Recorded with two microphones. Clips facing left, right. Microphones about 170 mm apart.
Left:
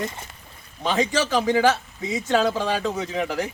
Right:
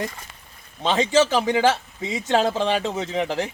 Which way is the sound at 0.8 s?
25° right (ahead or behind).